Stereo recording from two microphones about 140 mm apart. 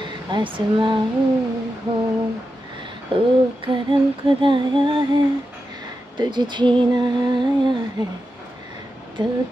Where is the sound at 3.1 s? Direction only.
35° right (ahead or behind).